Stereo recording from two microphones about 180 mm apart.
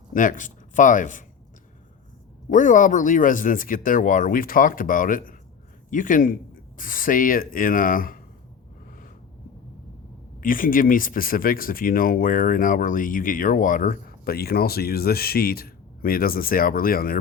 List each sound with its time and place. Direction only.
0.1 s speech: 45° left (ahead or behind)
2.5 s speech: 45° left (ahead or behind)
10.4 s speech: 50° left (ahead or behind)